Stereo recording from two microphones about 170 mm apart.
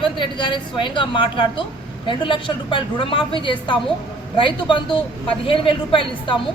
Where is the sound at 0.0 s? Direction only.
30° left (ahead or behind).